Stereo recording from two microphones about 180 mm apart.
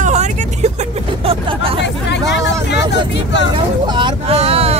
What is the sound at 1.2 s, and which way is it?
Hubbub, 30° right (ahead or behind).